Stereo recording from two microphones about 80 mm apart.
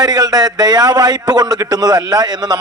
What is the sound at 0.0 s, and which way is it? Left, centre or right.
A man's voice, right.